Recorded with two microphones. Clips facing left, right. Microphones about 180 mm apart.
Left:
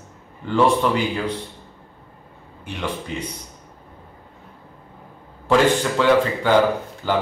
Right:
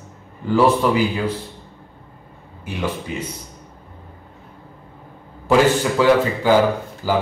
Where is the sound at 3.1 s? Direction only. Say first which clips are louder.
Right 1 dB; 5° right (ahead or behind).